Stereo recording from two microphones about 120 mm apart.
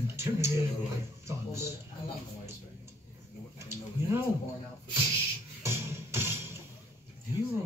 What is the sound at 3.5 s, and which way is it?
Speech, 20° right (ahead or behind).